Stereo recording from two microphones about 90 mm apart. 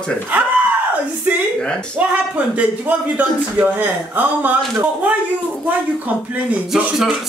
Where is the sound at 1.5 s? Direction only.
10° left (ahead or behind).